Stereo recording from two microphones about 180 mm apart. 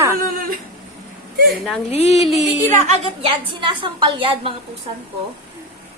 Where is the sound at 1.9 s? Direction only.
40° left (ahead or behind).